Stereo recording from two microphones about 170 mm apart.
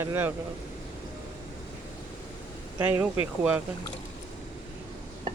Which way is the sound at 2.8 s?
10° right (ahead or behind).